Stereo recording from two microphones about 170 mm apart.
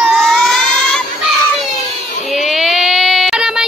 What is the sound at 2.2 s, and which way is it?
Child singing, centre (ahead or behind).